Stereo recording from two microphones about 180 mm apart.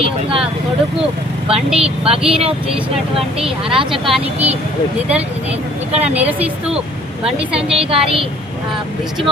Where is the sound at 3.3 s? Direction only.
5° right (ahead or behind).